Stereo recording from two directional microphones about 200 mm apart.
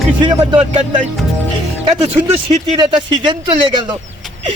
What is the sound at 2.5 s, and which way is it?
A man's voice, 20° right (ahead or behind).